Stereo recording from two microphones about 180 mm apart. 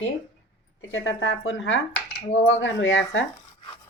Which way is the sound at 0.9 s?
90° left.